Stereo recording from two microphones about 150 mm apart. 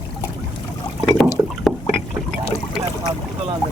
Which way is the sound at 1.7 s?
Centre (ahead or behind).